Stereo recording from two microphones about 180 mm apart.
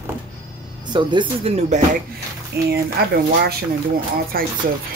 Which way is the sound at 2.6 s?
65° right (ahead or behind).